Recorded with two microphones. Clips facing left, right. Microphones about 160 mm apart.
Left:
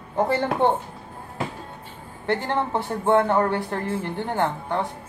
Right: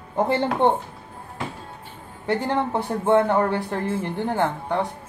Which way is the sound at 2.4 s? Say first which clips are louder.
Right 1 dB; 15° right (ahead or behind).